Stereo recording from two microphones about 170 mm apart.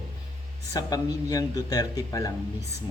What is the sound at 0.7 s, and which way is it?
Speech, 20° left (ahead or behind).